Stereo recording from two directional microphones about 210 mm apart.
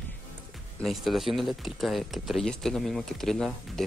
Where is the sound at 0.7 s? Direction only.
Centre (ahead or behind).